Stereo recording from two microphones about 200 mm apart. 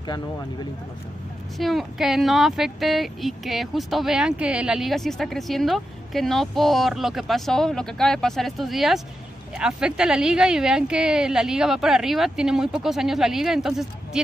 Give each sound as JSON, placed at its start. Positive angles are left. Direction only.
{"t": 1.6, "sound": "a woman's voice", "side_deg": 0}